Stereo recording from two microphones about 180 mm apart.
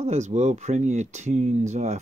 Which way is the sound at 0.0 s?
40° right (ahead or behind).